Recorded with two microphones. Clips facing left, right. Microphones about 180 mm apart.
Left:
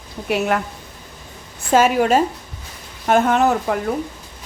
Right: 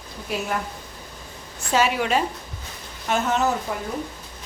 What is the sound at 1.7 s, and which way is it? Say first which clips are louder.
Speech: left 6 dB; 45° left (ahead or behind).